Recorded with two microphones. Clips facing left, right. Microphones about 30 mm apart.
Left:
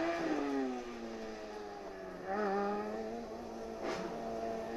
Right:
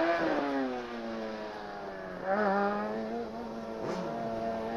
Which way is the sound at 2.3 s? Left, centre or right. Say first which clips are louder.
Right 6 dB; right.